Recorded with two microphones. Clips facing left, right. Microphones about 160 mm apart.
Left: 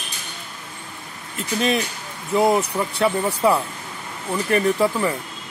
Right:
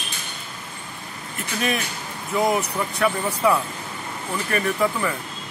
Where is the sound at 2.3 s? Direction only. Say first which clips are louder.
Left 3 dB; 25° left (ahead or behind).